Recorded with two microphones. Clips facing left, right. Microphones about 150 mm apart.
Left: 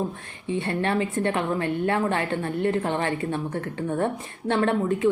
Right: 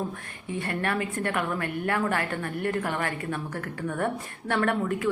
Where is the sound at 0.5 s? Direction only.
25° left (ahead or behind).